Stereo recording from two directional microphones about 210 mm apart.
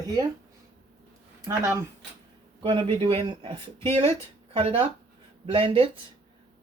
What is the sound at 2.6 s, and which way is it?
Speech, 25° right (ahead or behind).